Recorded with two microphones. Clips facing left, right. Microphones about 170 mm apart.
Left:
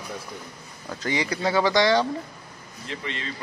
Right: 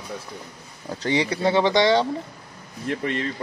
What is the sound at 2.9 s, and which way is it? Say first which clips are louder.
Speech: right 8 dB; 50° right (ahead or behind).